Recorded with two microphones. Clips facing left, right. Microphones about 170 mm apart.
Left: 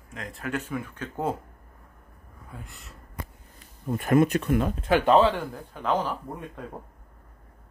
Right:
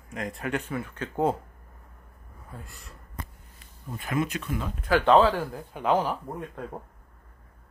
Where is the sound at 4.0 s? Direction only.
50° left (ahead or behind).